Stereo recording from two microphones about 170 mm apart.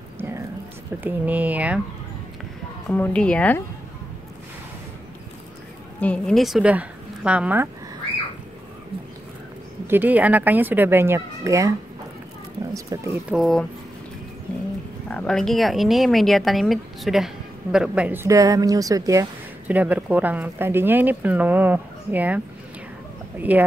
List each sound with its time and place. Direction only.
0.2 s a sound: 15° right (ahead or behind)
1.0 s speech: 10° right (ahead or behind)
2.9 s a woman's voice: 5° left (ahead or behind)
5.9 s a woman's voice: 5° left (ahead or behind); by 7.7 s 10° right (ahead or behind)
9.8 s speech: 10° right (ahead or behind)
12.7 s speech: 20° right (ahead or behind)
13.3 s a woman's voice: centre (ahead or behind)
15.0 s a woman's voice: 5° left (ahead or behind); by 19.2 s 20° right (ahead or behind)
19.7 s speech: 10° right (ahead or behind)
23.5 s speech: 10° right (ahead or behind)